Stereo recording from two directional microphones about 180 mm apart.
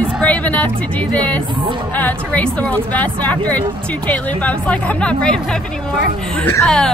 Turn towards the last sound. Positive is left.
turn(degrees=5)  # may be behind; listen again after turning